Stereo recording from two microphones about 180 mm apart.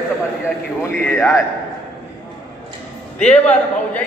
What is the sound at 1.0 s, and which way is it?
Speech, 10° left (ahead or behind).